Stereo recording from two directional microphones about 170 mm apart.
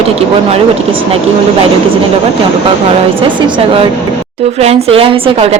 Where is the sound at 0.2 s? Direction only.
35° right (ahead or behind).